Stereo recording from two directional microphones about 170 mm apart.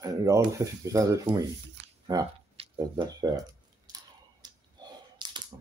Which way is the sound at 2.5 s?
35° right (ahead or behind).